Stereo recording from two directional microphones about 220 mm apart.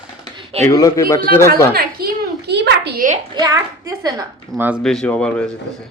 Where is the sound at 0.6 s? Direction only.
15° left (ahead or behind).